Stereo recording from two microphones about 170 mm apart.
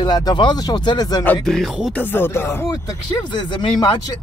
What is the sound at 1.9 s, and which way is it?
Speech, 10° left (ahead or behind).